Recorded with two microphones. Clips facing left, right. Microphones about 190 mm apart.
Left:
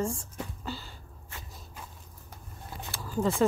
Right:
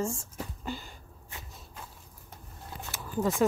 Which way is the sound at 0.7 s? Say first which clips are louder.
Right 1 dB; 15° right (ahead or behind).